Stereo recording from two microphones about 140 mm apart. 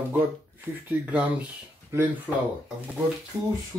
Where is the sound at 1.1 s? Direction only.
10° right (ahead or behind).